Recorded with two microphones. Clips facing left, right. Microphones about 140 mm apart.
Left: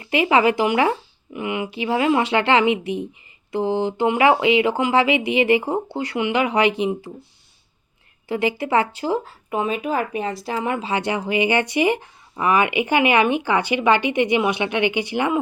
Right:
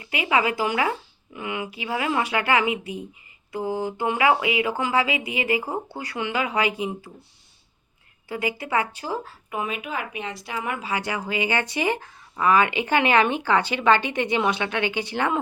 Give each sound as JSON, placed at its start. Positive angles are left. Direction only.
{"t": 0.0, "sound": "speech", "side_deg": 30}
{"t": 8.3, "sound": "speech", "side_deg": 25}